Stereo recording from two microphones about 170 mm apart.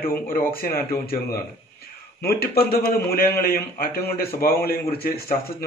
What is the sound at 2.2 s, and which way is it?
A man's voice, 65° left (ahead or behind).